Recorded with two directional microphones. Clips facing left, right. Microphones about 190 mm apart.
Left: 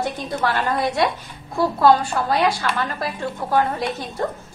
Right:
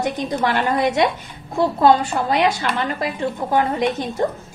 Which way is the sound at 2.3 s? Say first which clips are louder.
Right 1 dB; 20° right (ahead or behind).